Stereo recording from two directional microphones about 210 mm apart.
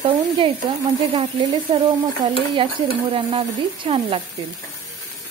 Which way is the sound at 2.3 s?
25° right (ahead or behind).